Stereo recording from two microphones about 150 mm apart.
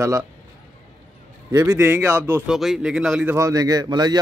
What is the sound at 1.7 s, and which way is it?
Speech, 10° right (ahead or behind).